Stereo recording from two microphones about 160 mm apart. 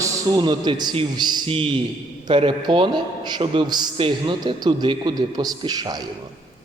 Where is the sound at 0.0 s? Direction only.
30° right (ahead or behind).